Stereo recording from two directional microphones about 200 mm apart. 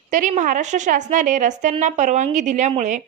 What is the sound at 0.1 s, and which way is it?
A woman's voice, 40° right (ahead or behind).